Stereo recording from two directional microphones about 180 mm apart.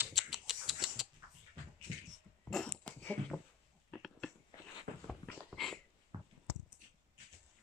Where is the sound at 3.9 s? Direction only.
Centre (ahead or behind).